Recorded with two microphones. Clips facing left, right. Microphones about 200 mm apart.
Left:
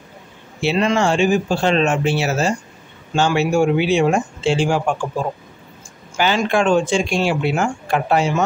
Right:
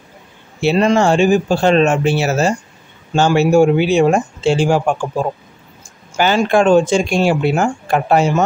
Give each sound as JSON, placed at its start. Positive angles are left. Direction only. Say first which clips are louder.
{"t": 0.6, "sound": "speech", "louder": "right 4 dB", "side_deg": -40}
{"t": 6.1, "sound": "speech", "louder": "right 4 dB", "side_deg": -45}